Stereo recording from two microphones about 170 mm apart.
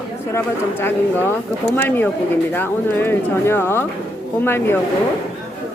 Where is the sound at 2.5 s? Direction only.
10° left (ahead or behind).